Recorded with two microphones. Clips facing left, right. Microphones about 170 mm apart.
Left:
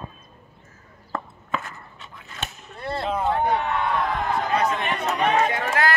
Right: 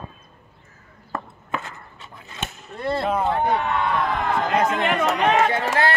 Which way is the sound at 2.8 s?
65° right (ahead or behind).